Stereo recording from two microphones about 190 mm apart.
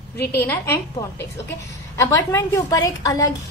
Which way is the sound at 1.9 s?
15° left (ahead or behind).